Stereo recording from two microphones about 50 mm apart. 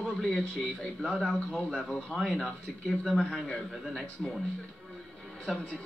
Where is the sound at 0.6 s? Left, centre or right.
Centre.